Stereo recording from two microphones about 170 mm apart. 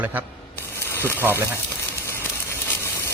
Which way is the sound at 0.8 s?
15° left (ahead or behind).